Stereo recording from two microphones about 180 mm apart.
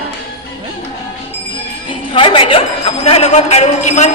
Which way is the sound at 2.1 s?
30° left (ahead or behind).